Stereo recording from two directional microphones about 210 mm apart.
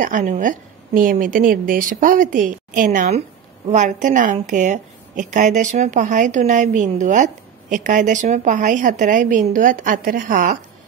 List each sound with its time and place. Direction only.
0.0 s a woman's voice: 35° right (ahead or behind)